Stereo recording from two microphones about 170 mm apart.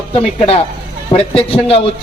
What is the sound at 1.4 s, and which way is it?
Speech, 35° left (ahead or behind).